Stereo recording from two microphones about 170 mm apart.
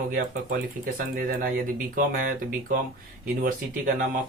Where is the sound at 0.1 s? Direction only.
55° right (ahead or behind).